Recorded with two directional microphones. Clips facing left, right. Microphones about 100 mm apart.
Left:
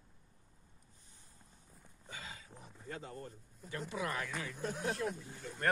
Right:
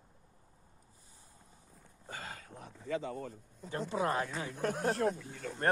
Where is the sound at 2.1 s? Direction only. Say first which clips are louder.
Right 5 dB; 50° right (ahead or behind); by 3.7 s 90° right.